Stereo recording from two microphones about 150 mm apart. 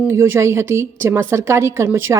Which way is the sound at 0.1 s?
20° right (ahead or behind).